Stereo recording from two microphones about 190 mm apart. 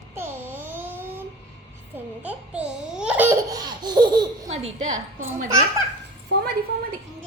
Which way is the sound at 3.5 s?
20° right (ahead or behind).